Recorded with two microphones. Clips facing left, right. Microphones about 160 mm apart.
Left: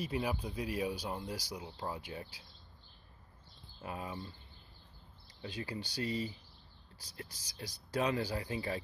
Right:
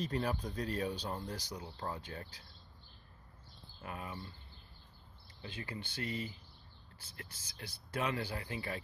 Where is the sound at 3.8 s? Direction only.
20° left (ahead or behind).